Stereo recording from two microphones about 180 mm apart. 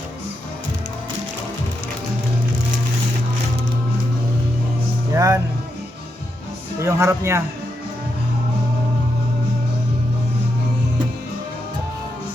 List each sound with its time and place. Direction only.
5.1 s music: 15° right (ahead or behind)
6.7 s speech: 15° right (ahead or behind)